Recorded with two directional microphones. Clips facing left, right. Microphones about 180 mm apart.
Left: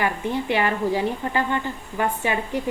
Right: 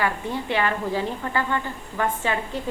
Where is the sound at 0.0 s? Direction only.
15° left (ahead or behind).